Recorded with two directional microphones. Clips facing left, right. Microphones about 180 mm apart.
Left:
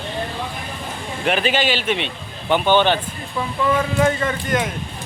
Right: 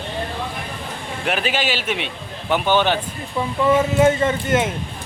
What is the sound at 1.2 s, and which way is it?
A man's voice, 5° right (ahead or behind).